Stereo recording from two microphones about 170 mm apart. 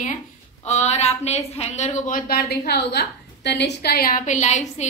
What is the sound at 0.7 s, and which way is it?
A woman's voice, 40° left (ahead or behind).